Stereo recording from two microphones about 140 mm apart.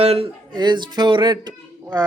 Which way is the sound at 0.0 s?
45° right (ahead or behind).